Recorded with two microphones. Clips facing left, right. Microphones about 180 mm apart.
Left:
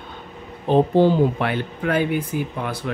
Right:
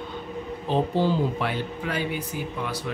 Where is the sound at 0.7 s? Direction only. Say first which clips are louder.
Left 8 dB; 55° left (ahead or behind).